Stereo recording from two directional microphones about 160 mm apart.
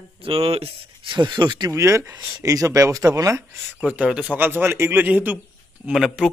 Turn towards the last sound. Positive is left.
turn(degrees=-5)  # may be behind; listen again after turning